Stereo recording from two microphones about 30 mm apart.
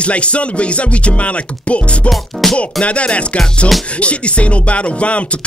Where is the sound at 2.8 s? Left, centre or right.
Left.